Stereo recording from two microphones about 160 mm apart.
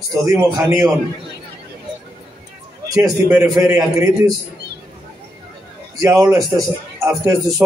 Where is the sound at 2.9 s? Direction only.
20° right (ahead or behind).